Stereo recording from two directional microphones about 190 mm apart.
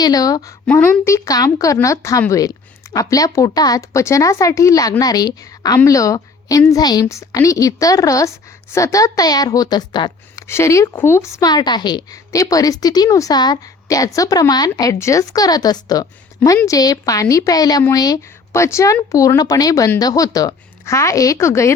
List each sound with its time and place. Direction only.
0.0 s speech: 20° left (ahead or behind)